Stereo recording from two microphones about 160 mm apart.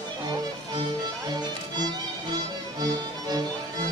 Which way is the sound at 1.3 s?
25° right (ahead or behind).